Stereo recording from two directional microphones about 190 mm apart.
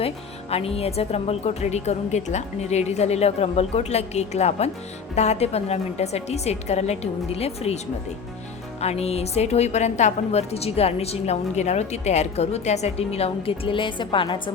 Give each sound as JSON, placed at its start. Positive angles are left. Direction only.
{"t": 0.5, "sound": "a woman's voice", "side_deg": 30}
{"t": 8.8, "sound": "a woman's voice", "side_deg": 35}